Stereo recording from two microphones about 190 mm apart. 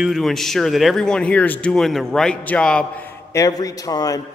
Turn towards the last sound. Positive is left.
turn(degrees=20)  # may be behind; listen again after turning